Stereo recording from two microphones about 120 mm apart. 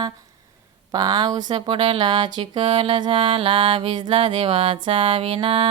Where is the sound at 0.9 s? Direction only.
35° right (ahead or behind).